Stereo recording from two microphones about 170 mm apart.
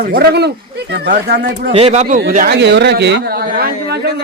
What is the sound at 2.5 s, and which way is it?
Speech, 85° right.